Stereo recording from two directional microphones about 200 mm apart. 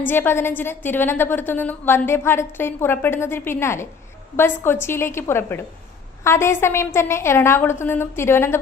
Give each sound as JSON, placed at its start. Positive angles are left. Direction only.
{"t": 0.1, "sound": "a woman's voice", "side_deg": 10}